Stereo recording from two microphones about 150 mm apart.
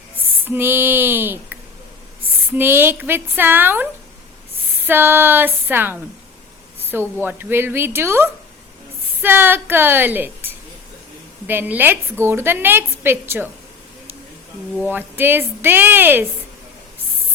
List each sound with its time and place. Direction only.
0.4 s a woman's voice: 15° right (ahead or behind)
4.9 s a woman's voice: 15° right (ahead or behind)
7.2 s a woman's voice: 15° right (ahead or behind)
14.8 s a woman's voice: 10° right (ahead or behind)